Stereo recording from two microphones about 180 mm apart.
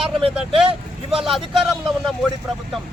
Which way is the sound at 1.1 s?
Centre (ahead or behind).